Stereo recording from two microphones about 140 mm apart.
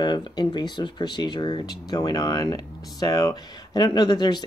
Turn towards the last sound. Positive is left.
turn(degrees=30)  # may be behind; listen again after turning